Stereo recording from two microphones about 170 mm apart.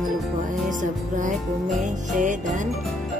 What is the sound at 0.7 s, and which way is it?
Music, 50° right (ahead or behind).